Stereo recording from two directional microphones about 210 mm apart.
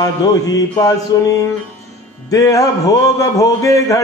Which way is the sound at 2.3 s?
15° left (ahead or behind).